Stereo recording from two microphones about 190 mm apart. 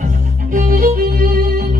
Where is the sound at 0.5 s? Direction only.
45° right (ahead or behind).